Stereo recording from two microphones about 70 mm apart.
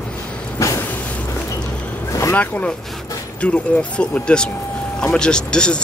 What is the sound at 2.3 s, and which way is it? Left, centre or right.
Speech, left.